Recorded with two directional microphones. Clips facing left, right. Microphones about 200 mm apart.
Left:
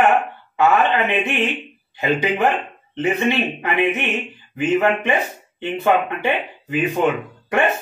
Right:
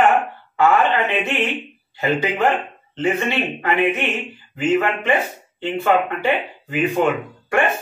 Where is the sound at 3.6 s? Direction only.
20° left (ahead or behind).